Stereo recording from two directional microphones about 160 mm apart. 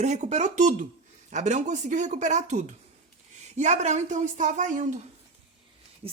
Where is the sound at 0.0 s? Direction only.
45° right (ahead or behind).